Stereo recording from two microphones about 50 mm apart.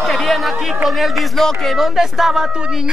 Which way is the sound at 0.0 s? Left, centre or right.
Centre.